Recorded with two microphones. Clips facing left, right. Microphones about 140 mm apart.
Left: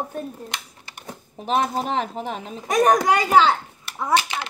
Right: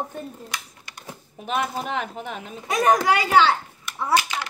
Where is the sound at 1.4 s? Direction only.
35° left (ahead or behind).